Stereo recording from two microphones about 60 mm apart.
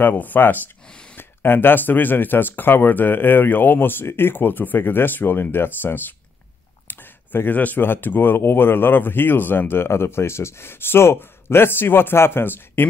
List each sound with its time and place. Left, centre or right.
0.0 s speech: left